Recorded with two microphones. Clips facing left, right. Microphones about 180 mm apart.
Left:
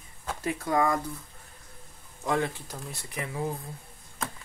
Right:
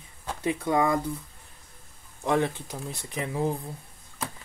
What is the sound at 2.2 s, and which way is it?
Speech, 20° right (ahead or behind).